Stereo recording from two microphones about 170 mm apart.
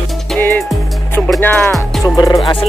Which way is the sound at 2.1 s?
20° left (ahead or behind).